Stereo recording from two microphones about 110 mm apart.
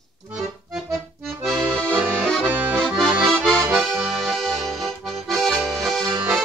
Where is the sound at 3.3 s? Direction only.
5° left (ahead or behind).